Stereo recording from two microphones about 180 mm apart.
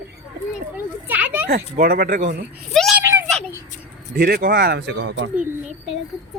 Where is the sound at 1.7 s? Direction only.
55° right (ahead or behind).